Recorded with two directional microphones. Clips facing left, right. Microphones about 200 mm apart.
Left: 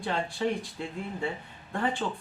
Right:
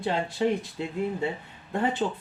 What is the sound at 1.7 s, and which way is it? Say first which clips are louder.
Speech: right 4 dB; 20° right (ahead or behind).